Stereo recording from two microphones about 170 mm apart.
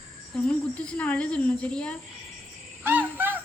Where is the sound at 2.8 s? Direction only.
10° right (ahead or behind).